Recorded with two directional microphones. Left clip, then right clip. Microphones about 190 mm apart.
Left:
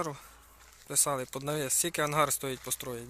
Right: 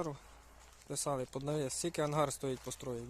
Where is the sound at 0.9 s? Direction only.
5° right (ahead or behind).